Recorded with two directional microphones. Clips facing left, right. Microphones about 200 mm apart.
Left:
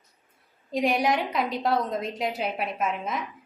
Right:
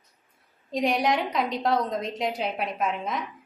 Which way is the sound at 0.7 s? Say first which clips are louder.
Even; centre (ahead or behind).